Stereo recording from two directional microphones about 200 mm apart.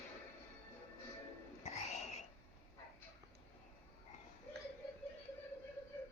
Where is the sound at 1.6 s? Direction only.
35° left (ahead or behind).